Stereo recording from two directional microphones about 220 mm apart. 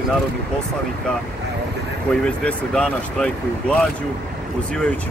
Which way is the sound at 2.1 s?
5° left (ahead or behind).